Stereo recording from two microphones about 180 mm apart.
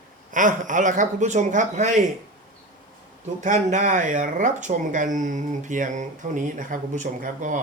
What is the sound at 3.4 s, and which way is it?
Speech, 40° right (ahead or behind).